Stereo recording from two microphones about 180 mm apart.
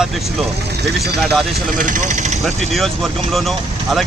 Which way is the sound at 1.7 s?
45° right (ahead or behind).